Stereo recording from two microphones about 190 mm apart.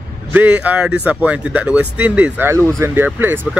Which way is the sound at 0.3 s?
5° right (ahead or behind).